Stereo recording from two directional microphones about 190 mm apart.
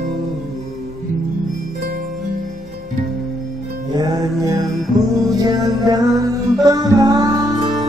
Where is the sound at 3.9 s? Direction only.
20° right (ahead or behind).